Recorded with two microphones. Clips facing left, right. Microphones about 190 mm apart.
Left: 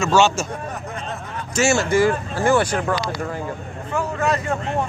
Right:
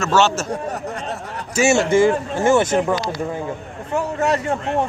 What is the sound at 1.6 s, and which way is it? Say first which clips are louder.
Speech: right 3 dB; 25° right (ahead or behind).